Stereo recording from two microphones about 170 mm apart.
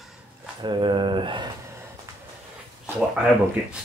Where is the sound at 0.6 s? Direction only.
30° right (ahead or behind).